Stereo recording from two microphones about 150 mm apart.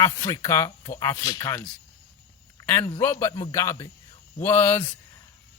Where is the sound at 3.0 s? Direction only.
15° left (ahead or behind).